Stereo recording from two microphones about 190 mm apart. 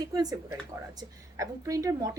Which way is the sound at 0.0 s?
20° right (ahead or behind).